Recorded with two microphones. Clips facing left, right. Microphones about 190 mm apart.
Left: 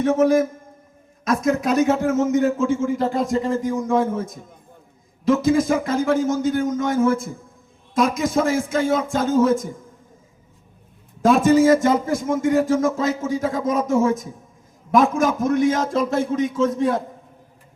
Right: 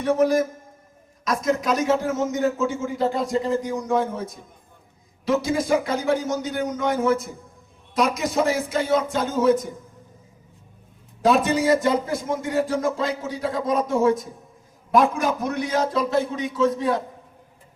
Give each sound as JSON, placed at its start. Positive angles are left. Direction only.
{"t": 1.3, "sound": "a man's voice", "side_deg": 55}
{"t": 11.2, "sound": "a man's voice", "side_deg": 45}